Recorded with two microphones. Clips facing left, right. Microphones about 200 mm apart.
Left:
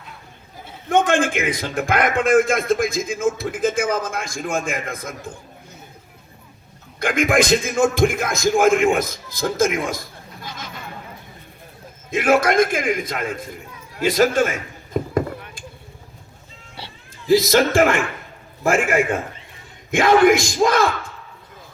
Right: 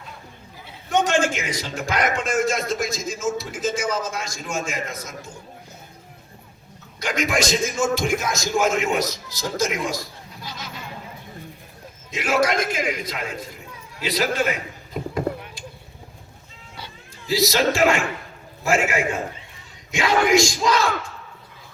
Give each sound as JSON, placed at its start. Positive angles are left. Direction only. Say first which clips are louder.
{"t": 0.9, "sound": "a man's voice", "louder": "left 3 dB", "side_deg": 55}
{"t": 7.0, "sound": "a man's voice", "louder": "left 5 dB", "side_deg": 55}
{"t": 12.1, "sound": "a man's voice", "louder": "left 5 dB", "side_deg": 55}
{"t": 14.0, "sound": "a sound", "louder": "left 6 dB", "side_deg": 50}
{"t": 17.2, "sound": "a man's voice", "louder": "left 5 dB", "side_deg": 50}